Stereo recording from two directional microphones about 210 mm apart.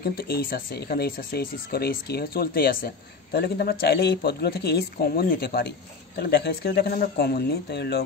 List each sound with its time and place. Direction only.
0.0 s speech: 45° left (ahead or behind)